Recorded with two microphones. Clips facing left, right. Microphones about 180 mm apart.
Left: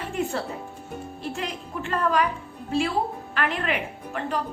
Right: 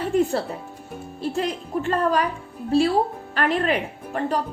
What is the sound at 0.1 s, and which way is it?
A woman's voice, 35° right (ahead or behind).